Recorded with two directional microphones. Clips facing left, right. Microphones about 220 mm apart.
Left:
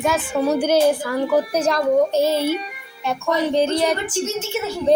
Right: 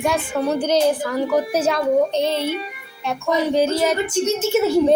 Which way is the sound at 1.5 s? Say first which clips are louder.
Even; 5° right (ahead or behind).